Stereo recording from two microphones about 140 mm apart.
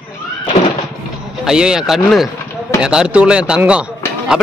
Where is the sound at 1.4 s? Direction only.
5° right (ahead or behind).